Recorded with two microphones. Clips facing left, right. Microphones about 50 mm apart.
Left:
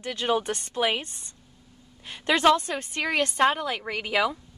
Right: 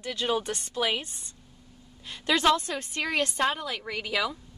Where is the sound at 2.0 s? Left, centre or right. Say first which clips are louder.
Left 3 dB; left.